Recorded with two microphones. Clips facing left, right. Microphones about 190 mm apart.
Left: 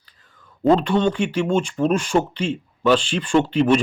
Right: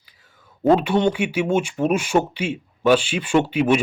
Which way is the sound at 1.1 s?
5° right (ahead or behind).